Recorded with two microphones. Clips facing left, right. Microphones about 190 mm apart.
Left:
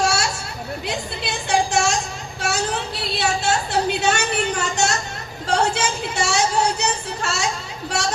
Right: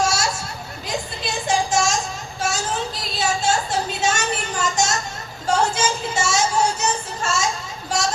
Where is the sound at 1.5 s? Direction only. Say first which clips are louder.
Left 1 dB; 65° left (ahead or behind).